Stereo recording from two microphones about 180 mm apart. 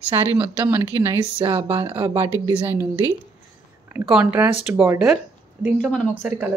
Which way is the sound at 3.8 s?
10° right (ahead or behind).